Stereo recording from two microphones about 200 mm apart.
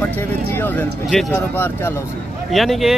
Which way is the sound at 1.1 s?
Centre (ahead or behind).